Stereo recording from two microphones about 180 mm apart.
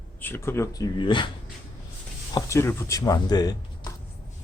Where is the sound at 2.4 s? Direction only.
15° left (ahead or behind).